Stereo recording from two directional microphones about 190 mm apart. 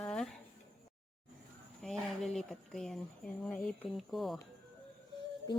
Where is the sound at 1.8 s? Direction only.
Centre (ahead or behind).